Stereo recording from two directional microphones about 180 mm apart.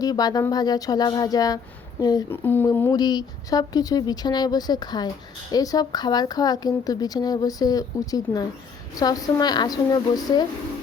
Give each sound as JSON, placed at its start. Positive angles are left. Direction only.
{"t": 0.0, "sound": "speech", "side_deg": 20}